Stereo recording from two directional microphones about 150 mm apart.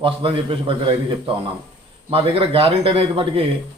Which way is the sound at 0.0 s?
35° right (ahead or behind).